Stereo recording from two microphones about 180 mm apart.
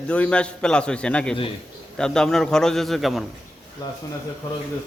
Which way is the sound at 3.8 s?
20° left (ahead or behind).